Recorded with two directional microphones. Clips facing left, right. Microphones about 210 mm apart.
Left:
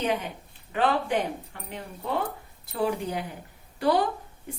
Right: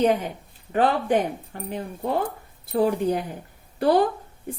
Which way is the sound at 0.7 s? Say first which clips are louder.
Right 4 dB; 45° right (ahead or behind).